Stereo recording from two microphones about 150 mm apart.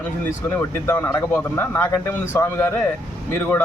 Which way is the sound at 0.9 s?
15° left (ahead or behind).